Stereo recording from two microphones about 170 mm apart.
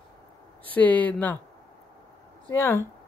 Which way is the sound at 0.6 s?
10° left (ahead or behind).